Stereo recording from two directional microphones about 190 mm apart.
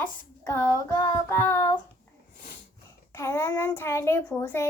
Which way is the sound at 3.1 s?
15° left (ahead or behind).